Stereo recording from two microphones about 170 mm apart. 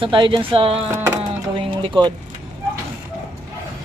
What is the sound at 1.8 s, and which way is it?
Speech, 25° right (ahead or behind).